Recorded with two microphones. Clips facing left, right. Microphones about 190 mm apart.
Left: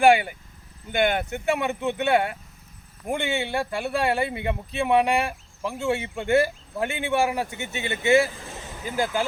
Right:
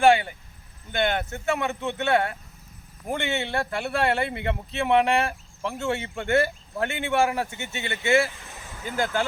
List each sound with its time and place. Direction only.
0.0 s speech: 10° left (ahead or behind)